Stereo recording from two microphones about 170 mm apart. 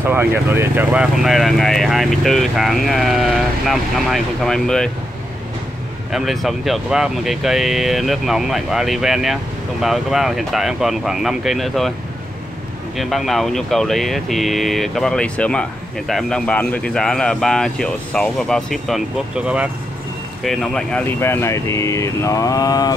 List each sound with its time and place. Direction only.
0.0 s speech: 10° right (ahead or behind); by 4.9 s 5° left (ahead or behind)
6.1 s speech: centre (ahead or behind)
12.9 s speech: centre (ahead or behind)
21.2 s speech: 15° left (ahead or behind)